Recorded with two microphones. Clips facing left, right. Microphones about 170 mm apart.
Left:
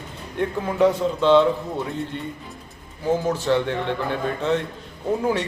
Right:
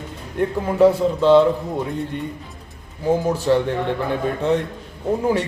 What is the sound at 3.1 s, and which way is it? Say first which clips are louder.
Speech: right 3 dB; 10° right (ahead or behind).